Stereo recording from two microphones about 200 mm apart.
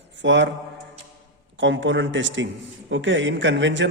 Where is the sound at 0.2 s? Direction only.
65° right (ahead or behind).